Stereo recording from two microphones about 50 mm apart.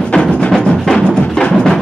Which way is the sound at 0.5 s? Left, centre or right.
Centre.